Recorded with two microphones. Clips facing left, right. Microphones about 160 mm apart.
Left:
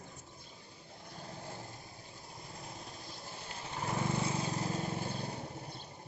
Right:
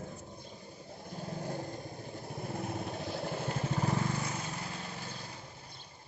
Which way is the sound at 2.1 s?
60° right (ahead or behind).